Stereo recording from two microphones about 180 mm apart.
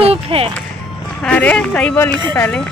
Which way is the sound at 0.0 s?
30° right (ahead or behind).